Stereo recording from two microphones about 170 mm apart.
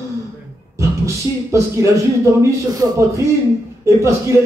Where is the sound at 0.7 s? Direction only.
15° right (ahead or behind).